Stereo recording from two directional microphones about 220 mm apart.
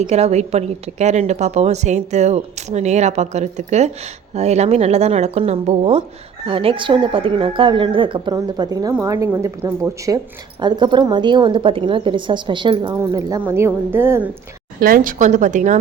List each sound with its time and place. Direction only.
0.1 s a woman's voice: 30° right (ahead or behind); by 14.3 s 10° right (ahead or behind)
14.8 s a woman's voice: 40° right (ahead or behind)